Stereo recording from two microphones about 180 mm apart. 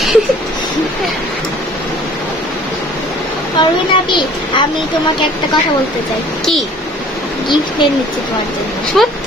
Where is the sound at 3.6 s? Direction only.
25° left (ahead or behind).